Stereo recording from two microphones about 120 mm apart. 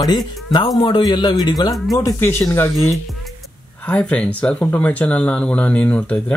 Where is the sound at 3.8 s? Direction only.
10° left (ahead or behind).